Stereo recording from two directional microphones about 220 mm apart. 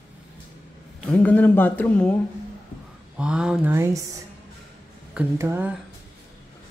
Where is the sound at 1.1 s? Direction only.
5° left (ahead or behind).